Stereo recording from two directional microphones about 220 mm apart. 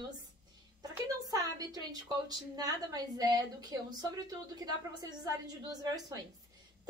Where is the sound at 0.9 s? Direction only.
15° right (ahead or behind).